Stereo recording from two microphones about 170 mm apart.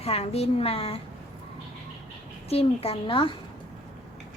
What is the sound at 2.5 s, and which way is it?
Speech, 35° left (ahead or behind).